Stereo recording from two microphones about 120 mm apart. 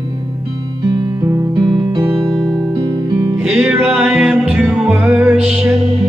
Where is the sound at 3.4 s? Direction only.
10° right (ahead or behind).